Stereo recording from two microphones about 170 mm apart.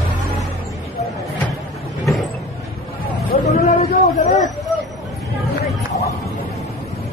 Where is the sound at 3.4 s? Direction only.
40° left (ahead or behind).